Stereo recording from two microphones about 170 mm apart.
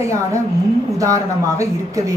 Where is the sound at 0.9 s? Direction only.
20° right (ahead or behind).